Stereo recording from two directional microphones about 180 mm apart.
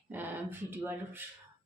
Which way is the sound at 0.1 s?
10° right (ahead or behind).